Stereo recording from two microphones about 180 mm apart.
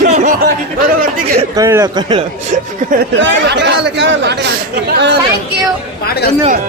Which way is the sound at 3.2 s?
75° right (ahead or behind).